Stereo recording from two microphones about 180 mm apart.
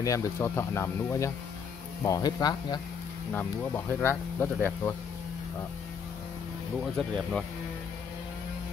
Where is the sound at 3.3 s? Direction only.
10° left (ahead or behind).